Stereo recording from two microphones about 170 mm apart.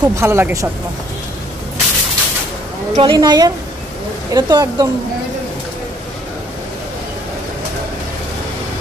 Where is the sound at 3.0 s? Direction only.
25° right (ahead or behind).